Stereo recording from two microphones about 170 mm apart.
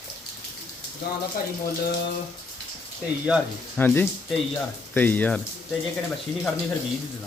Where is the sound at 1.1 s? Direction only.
65° left (ahead or behind).